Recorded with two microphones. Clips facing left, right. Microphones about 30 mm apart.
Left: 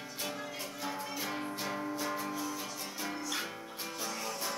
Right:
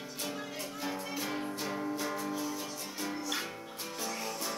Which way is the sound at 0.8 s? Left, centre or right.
Centre.